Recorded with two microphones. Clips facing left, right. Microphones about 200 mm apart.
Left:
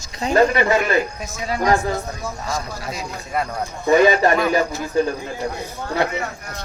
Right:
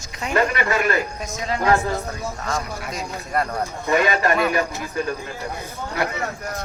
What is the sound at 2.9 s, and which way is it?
Speech, centre (ahead or behind).